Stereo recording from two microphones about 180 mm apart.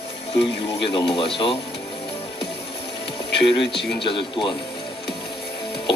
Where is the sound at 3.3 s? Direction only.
75° left (ahead or behind).